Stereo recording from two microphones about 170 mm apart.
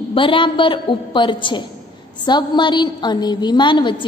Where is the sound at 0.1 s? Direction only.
30° left (ahead or behind).